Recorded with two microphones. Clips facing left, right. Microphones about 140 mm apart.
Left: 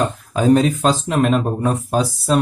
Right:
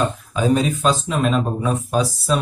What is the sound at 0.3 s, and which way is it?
Speech, 60° left (ahead or behind).